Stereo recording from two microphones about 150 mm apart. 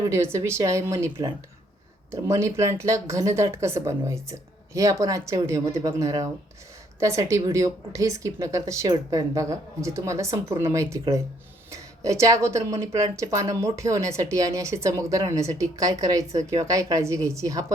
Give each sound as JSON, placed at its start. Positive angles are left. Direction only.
{"t": 0.0, "sound": "speech", "side_deg": -20}